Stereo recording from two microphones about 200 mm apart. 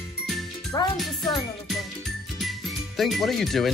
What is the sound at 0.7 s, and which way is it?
Speech, 20° left (ahead or behind).